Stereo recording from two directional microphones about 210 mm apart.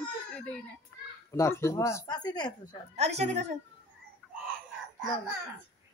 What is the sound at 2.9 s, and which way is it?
Speech, 30° right (ahead or behind).